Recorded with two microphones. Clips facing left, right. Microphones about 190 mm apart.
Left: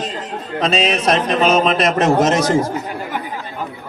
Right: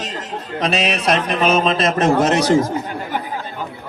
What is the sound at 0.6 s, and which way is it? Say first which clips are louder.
Mantra: left 2 dB; 35° left (ahead or behind).